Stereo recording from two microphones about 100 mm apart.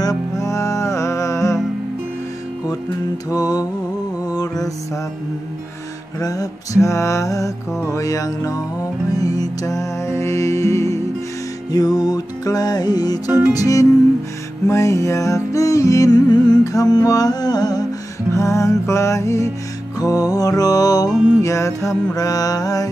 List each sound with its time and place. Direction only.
0.0 s music: 40° left (ahead or behind)
3.3 s mantra: 40° left (ahead or behind)
4.3 s music: 40° left (ahead or behind)
6.1 s mantra: 35° left (ahead or behind)
9.1 s music: 40° left (ahead or behind)
11.7 s music: 40° left (ahead or behind)
13.5 s mantra: 35° left (ahead or behind)
14.7 s music: 30° left (ahead or behind)
18.3 s mantra: 30° left (ahead or behind)